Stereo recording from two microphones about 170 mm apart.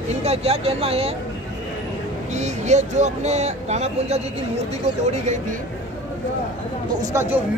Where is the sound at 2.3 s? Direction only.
40° right (ahead or behind).